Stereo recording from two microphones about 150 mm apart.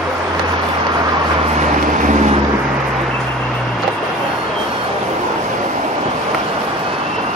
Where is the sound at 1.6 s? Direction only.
55° right (ahead or behind).